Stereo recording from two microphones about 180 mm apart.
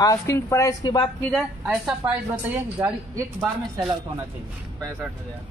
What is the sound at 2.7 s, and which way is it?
Speech, 15° right (ahead or behind).